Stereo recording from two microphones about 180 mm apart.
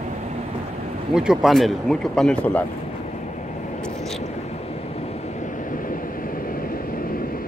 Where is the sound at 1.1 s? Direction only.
5° right (ahead or behind).